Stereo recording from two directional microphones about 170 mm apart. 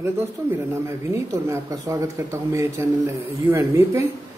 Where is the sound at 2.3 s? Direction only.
15° right (ahead or behind).